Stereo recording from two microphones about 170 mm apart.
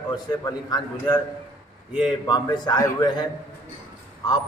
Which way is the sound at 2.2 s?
25° left (ahead or behind).